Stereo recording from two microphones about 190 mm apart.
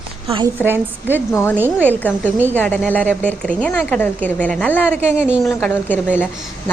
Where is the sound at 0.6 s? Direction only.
10° right (ahead or behind).